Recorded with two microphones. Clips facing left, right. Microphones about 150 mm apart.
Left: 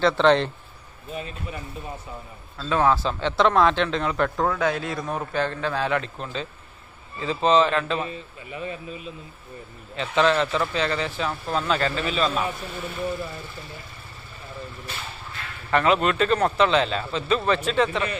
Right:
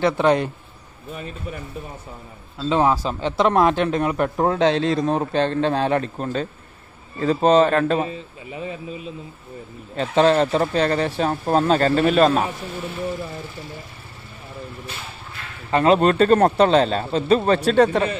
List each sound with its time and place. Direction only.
0.0 s speech: 10° right (ahead or behind)
2.6 s speech: 15° right (ahead or behind)
3.3 s speech: 40° right (ahead or behind)
4.0 s speech: 15° right (ahead or behind)
4.5 s a man's voice: 25° right (ahead or behind)
5.9 s speech: 40° right (ahead or behind)
8.0 s a man's voice: 25° right (ahead or behind)
9.9 s speech: 40° right (ahead or behind)
15.7 s speech: 35° right (ahead or behind)